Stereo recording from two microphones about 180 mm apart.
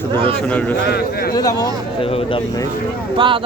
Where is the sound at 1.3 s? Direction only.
20° left (ahead or behind).